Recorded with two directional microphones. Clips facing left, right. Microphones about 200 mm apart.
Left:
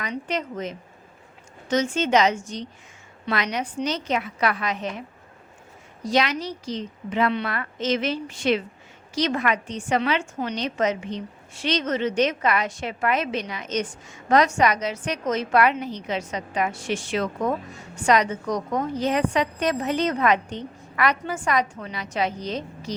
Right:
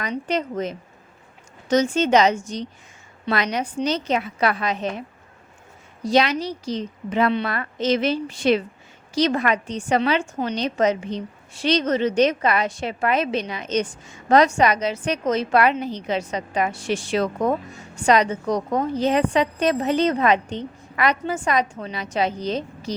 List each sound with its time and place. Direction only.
0.0 s a woman's voice: 35° right (ahead or behind)
6.1 s a woman's voice: 30° right (ahead or behind)